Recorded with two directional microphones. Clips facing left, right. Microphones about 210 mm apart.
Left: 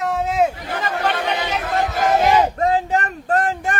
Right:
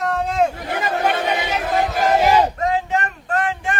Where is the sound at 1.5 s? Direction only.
Centre (ahead or behind).